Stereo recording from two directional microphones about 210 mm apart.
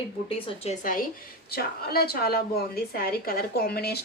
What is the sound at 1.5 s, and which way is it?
A woman's voice, 45° left (ahead or behind).